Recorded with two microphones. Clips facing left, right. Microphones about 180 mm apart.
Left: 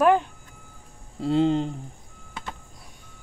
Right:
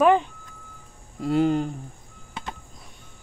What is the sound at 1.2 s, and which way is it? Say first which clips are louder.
Speech: even; 25° left (ahead or behind).